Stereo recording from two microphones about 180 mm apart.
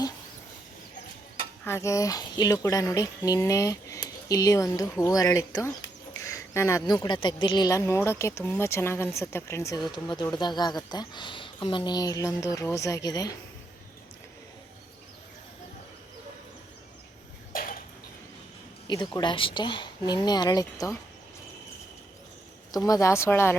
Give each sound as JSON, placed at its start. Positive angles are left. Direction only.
{"t": 1.6, "sound": "speech", "side_deg": 15}
{"t": 17.5, "sound": "a sound", "side_deg": 50}
{"t": 18.9, "sound": "speech", "side_deg": 25}
{"t": 22.7, "sound": "speech", "side_deg": 20}